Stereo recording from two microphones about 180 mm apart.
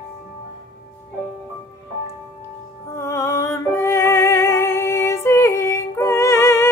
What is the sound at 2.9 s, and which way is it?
Music, 15° left (ahead or behind).